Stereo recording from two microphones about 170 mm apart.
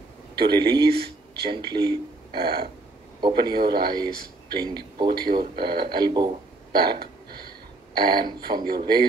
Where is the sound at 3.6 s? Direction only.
60° right (ahead or behind).